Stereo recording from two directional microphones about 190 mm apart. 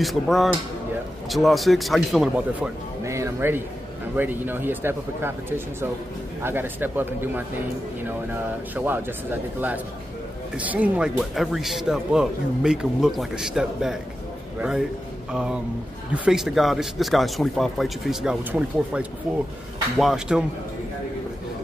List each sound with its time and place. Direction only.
0.0 s speech: centre (ahead or behind)
3.0 s music: 15° right (ahead or behind)
4.2 s speech: 10° right (ahead or behind)
6.4 s speech: 10° right (ahead or behind)
8.7 s speech: 10° right (ahead or behind)
10.5 s speech: 10° right (ahead or behind)
15.3 s speech: 5° right (ahead or behind)
19.3 s speech: 5° left (ahead or behind)